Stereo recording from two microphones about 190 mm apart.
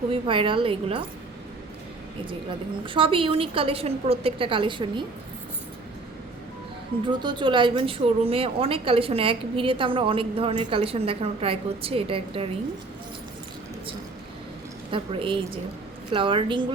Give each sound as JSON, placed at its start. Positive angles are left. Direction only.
{"t": 0.1, "sound": "a woman's voice", "side_deg": -25}
{"t": 2.8, "sound": "a woman's voice", "side_deg": -25}
{"t": 7.1, "sound": "a woman's voice", "side_deg": -25}
{"t": 14.8, "sound": "a woman's voice", "side_deg": -25}